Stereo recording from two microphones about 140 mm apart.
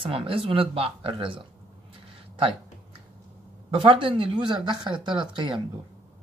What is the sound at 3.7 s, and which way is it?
Speech, 40° right (ahead or behind).